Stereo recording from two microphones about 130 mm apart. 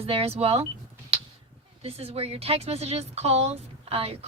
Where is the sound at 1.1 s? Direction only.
50° right (ahead or behind).